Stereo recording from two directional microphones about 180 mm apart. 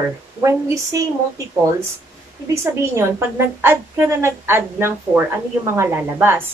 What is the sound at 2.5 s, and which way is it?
A woman's voice, 15° right (ahead or behind).